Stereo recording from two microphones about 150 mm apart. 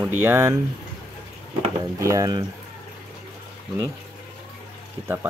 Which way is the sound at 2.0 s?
20° right (ahead or behind).